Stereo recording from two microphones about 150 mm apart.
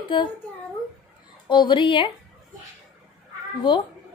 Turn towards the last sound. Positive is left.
turn(degrees=35)  # may be behind; listen again after turning